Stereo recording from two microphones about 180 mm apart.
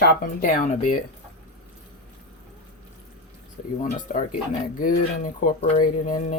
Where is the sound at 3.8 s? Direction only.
50° left (ahead or behind).